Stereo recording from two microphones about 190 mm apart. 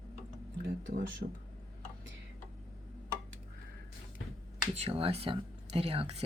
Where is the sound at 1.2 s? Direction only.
60° right (ahead or behind).